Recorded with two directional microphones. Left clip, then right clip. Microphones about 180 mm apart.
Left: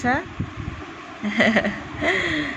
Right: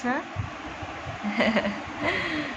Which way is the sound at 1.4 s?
25° left (ahead or behind).